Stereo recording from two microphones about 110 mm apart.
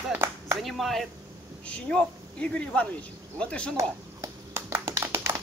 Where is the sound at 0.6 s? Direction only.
Centre (ahead or behind).